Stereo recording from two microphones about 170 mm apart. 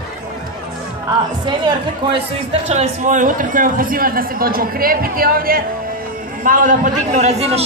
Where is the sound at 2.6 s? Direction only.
45° right (ahead or behind).